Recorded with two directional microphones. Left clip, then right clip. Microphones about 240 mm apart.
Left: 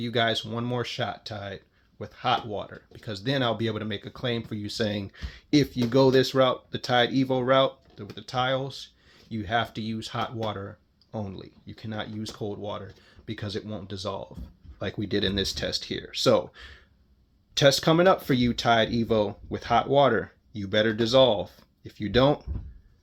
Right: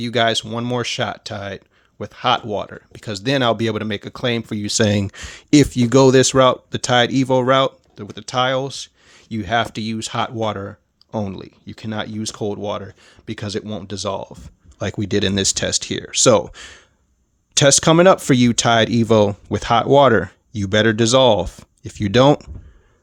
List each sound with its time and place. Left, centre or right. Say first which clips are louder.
0.0 s speech: right 8 dB; right